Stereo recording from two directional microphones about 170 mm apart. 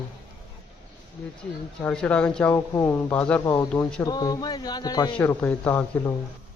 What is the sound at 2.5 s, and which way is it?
Speech, 15° left (ahead or behind).